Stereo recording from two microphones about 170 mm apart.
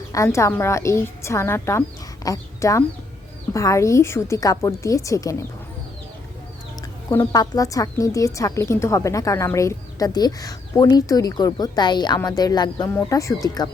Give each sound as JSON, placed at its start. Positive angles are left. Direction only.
{"t": 0.1, "sound": "a woman's voice", "side_deg": 15}
{"t": 7.1, "sound": "speech", "side_deg": 20}